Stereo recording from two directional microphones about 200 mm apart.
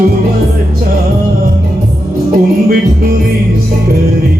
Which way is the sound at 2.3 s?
45° right (ahead or behind).